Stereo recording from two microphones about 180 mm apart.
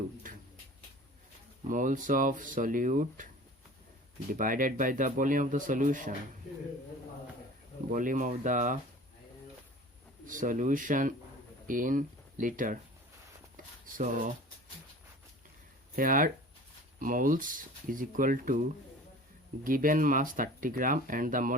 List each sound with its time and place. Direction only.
0.2 s a sound: 50° right (ahead or behind)
1.6 s speech: 45° right (ahead or behind)
4.3 s speech: 50° right (ahead or behind)
7.9 s speech: 45° right (ahead or behind)
10.2 s speech: 45° right (ahead or behind)
16.0 s speech: 50° right (ahead or behind)
19.6 s speech: 50° right (ahead or behind)